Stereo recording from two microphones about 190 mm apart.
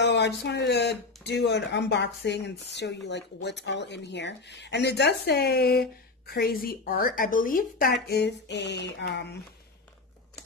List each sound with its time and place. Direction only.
0.0 s speech: 65° left (ahead or behind)